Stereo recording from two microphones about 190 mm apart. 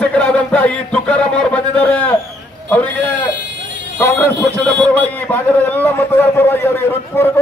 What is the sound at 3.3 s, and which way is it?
Vehicle, 70° right (ahead or behind).